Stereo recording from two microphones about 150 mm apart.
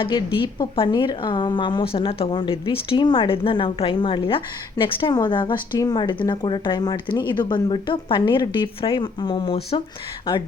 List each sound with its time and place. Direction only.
0.0 s a woman's voice: 30° left (ahead or behind)